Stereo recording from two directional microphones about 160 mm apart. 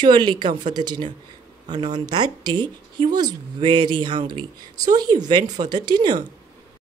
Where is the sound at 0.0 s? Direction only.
30° right (ahead or behind).